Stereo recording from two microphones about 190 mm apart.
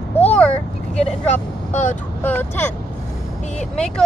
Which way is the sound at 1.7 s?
40° left (ahead or behind).